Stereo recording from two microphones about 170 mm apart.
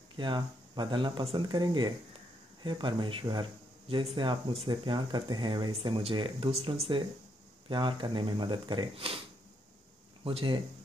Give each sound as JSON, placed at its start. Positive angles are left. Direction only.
{"t": 0.1, "sound": "speech", "side_deg": -25}
{"t": 10.2, "sound": "speech", "side_deg": -30}